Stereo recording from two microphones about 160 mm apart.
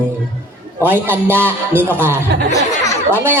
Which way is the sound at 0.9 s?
15° right (ahead or behind).